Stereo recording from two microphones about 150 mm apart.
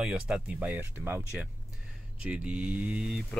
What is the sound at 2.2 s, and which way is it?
Mantra, 5° right (ahead or behind).